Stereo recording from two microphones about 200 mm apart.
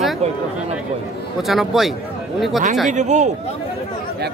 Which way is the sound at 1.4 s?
Centre (ahead or behind).